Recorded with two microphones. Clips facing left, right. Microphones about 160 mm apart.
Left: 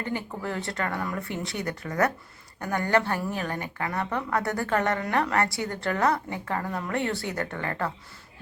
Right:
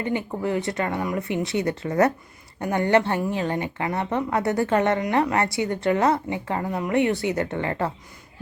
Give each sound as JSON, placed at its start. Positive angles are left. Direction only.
{"t": 0.0, "sound": "a woman's voice", "side_deg": -20}